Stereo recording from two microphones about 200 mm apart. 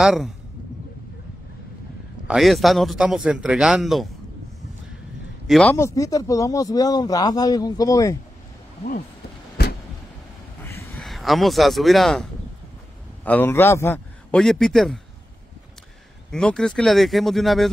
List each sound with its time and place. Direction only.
0.0 s a man's voice: centre (ahead or behind)
2.2 s a man's voice: centre (ahead or behind)
5.5 s speech: 5° left (ahead or behind)
11.0 s speech: centre (ahead or behind)
16.3 s a man's voice: 5° left (ahead or behind)